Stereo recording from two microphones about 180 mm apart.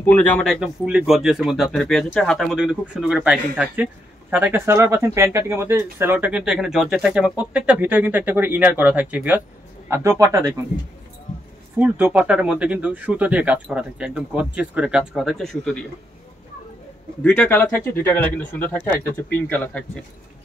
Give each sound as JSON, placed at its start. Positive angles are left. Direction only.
{"t": 0.0, "sound": "speech", "side_deg": 10}
{"t": 11.8, "sound": "speech", "side_deg": -10}
{"t": 17.2, "sound": "speech", "side_deg": 10}